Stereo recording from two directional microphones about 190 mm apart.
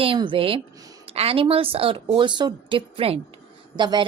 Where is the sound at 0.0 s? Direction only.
25° right (ahead or behind).